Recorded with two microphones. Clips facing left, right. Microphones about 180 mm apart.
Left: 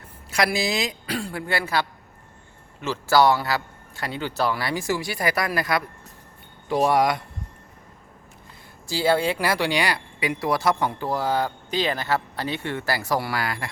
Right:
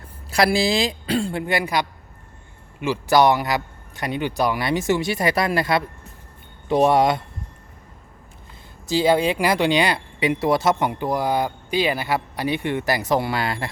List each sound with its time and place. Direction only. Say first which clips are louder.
0.3 s speech: right 5 dB; 30° right (ahead or behind)
8.9 s speech: right 3 dB; 20° right (ahead or behind)